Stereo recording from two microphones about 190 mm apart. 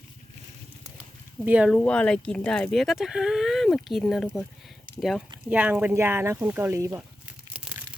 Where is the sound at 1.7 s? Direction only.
5° left (ahead or behind).